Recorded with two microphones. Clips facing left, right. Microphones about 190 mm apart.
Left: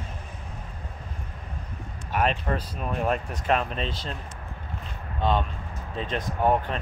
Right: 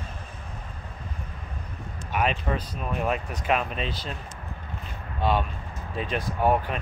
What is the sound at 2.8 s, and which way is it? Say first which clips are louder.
Speech: left 1 dB; centre (ahead or behind).